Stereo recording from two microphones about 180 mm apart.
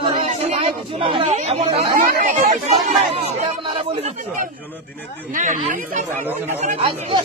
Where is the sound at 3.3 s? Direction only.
35° right (ahead or behind).